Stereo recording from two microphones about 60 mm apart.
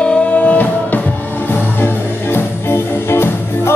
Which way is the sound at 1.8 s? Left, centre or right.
Left.